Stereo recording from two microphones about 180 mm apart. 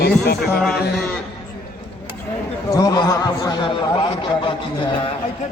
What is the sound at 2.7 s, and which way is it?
Speech, 20° left (ahead or behind).